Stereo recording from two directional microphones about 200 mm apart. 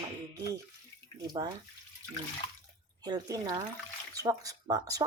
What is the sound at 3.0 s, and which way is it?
Speech, 20° right (ahead or behind).